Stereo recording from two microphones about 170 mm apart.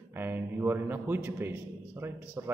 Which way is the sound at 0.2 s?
10° right (ahead or behind).